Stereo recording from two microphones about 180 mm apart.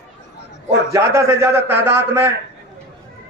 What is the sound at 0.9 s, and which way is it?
A man's voice, 15° right (ahead or behind).